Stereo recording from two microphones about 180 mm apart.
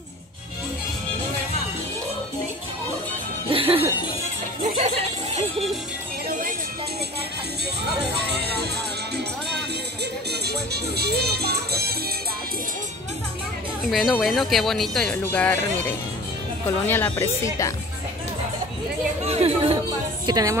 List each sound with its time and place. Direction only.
3.4 s music: 30° right (ahead or behind)
6.2 s music: 50° right (ahead or behind)
8.0 s music: 65° right (ahead or behind)
13.8 s speech: centre (ahead or behind); by 17.7 s 15° left (ahead or behind)
19.2 s music: 35° right (ahead or behind)
20.2 s speech: 20° right (ahead or behind)